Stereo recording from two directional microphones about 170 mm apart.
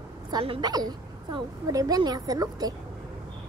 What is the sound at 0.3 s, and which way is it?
A woman's voice, 25° right (ahead or behind).